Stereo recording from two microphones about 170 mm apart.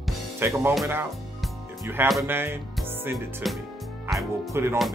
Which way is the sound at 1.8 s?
15° right (ahead or behind).